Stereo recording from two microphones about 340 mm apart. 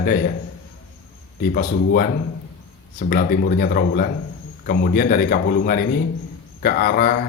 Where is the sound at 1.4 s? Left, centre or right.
Left.